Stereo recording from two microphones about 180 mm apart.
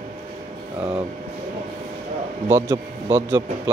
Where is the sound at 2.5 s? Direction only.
15° right (ahead or behind).